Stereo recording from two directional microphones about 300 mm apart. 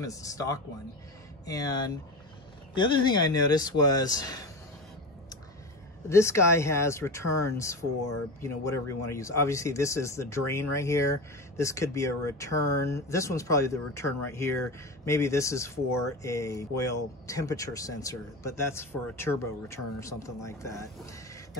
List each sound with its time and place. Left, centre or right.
0.0 s speech: centre
6.0 s speech: centre